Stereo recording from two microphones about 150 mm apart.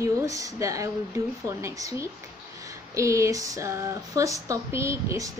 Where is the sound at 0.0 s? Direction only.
20° right (ahead or behind).